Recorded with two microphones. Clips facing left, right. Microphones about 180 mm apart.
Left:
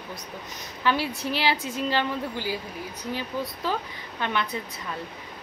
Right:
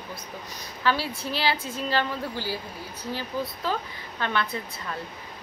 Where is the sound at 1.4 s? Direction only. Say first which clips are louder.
Left 1 dB; 15° left (ahead or behind).